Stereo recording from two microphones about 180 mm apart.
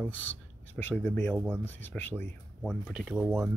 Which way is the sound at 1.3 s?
10° right (ahead or behind).